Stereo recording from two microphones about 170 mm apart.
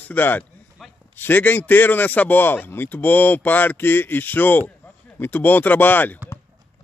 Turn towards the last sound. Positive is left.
turn(degrees=10)  # may be behind; listen again after turning